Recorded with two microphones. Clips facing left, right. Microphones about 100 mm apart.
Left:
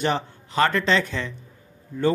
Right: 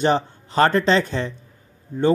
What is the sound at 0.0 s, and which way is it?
A man's voice, 35° right (ahead or behind).